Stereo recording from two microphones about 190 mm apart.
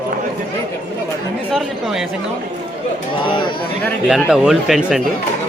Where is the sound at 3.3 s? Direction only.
25° left (ahead or behind).